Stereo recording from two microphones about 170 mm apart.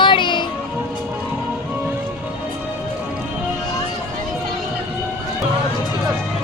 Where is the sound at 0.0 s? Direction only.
30° left (ahead or behind).